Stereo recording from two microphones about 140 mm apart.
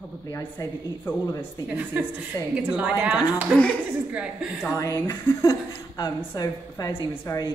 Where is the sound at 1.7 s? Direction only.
10° right (ahead or behind).